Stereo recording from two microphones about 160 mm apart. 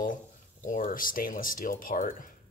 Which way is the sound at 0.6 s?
55° left (ahead or behind).